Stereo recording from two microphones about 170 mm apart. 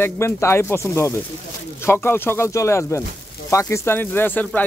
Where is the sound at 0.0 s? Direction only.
15° left (ahead or behind).